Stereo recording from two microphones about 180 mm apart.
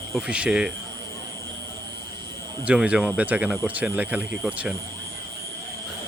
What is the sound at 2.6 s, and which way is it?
Speech, 5° right (ahead or behind).